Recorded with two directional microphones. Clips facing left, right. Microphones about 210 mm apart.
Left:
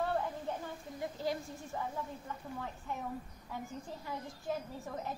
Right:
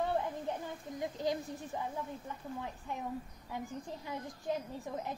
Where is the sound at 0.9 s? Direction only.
20° right (ahead or behind).